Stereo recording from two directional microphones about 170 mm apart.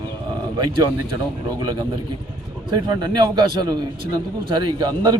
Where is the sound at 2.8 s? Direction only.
25° right (ahead or behind).